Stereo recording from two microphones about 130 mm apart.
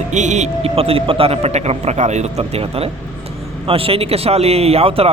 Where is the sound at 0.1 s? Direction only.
65° right (ahead or behind).